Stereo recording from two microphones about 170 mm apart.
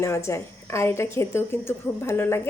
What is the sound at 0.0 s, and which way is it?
A woman's voice, 15° left (ahead or behind).